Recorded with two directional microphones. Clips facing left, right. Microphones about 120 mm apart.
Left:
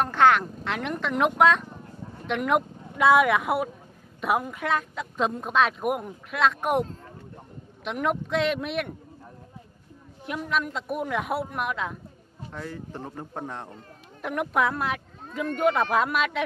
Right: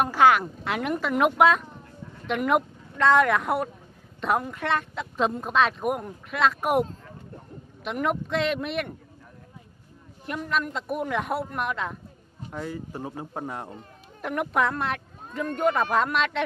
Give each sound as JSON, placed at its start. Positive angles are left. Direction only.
{"t": 0.0, "sound": "speech", "side_deg": -5}
{"t": 10.2, "sound": "speech", "side_deg": 0}
{"t": 12.4, "sound": "speech", "side_deg": -10}